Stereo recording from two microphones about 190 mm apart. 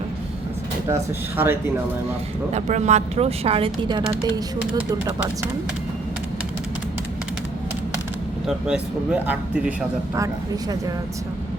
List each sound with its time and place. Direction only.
1.4 s speech: 10° right (ahead or behind)
2.5 s speech: 35° right (ahead or behind)
8.4 s speech: 5° right (ahead or behind)